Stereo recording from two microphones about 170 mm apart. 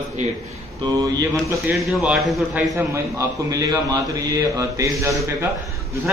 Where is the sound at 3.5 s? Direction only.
20° right (ahead or behind).